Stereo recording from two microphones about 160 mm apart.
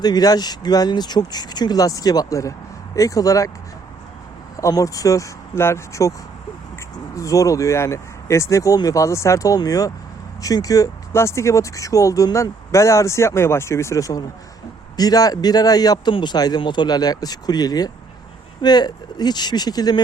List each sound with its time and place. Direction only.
0.0 s speech: 25° left (ahead or behind)
4.5 s speech: 20° left (ahead or behind)